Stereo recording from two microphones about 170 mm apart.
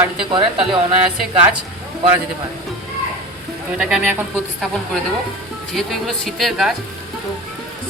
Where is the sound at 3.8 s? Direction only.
5° right (ahead or behind).